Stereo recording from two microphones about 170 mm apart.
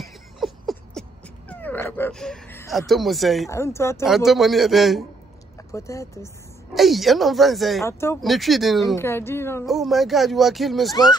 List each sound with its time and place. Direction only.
0.0 s a sound: centre (ahead or behind)
1.5 s dog: 10° left (ahead or behind)
2.9 s speech: centre (ahead or behind)
3.4 s speech: 15° left (ahead or behind)
4.0 s speech: centre (ahead or behind)
5.7 s speech: 20° left (ahead or behind)
6.7 s speech: centre (ahead or behind)
7.8 s speech: 15° left (ahead or behind)
8.2 s speech: centre (ahead or behind)
8.9 s speech: 15° left (ahead or behind)
9.7 s speech: centre (ahead or behind)